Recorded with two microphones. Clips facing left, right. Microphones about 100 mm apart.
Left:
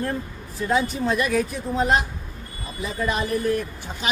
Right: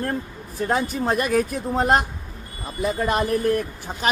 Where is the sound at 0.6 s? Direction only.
50° right (ahead or behind).